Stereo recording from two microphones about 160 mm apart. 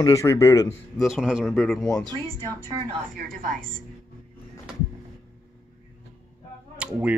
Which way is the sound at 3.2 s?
60° right (ahead or behind).